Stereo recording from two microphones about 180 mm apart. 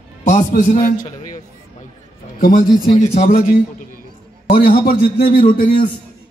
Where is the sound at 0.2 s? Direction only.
45° left (ahead or behind).